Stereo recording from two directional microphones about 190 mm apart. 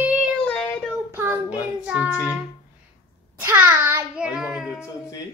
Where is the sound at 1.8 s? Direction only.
5° right (ahead or behind).